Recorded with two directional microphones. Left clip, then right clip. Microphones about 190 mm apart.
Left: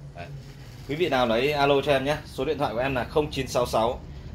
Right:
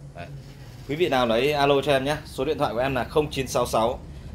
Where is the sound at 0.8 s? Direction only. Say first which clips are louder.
Right 1 dB; centre (ahead or behind).